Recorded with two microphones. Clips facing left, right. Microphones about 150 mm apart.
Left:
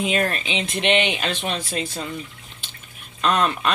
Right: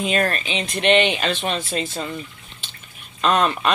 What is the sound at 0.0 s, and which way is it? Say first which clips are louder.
Speech: right 1 dB; 10° left (ahead or behind).